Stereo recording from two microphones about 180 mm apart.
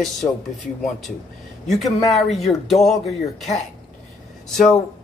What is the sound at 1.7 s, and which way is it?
Speech, centre (ahead or behind).